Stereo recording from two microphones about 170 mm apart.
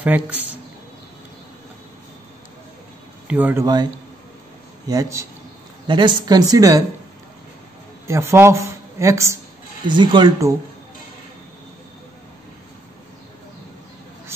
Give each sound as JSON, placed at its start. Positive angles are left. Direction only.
{"t": 0.0, "sound": "speech", "side_deg": -10}
{"t": 3.3, "sound": "speech", "side_deg": -10}
{"t": 3.6, "sound": "a woman's voice", "side_deg": -25}
{"t": 8.1, "sound": "speech", "side_deg": -15}
{"t": 9.8, "sound": "a woman's voice", "side_deg": -25}